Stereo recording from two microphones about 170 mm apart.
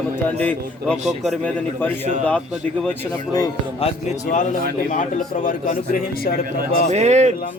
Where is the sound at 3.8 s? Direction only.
40° left (ahead or behind).